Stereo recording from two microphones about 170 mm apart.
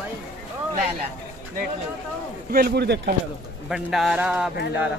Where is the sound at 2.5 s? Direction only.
70° right (ahead or behind).